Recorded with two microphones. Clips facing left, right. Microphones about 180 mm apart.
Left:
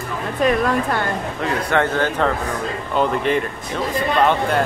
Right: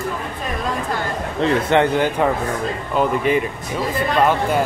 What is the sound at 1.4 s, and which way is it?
A man's voice, 25° right (ahead or behind).